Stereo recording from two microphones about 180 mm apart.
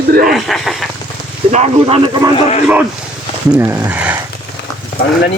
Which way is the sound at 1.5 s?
40° right (ahead or behind).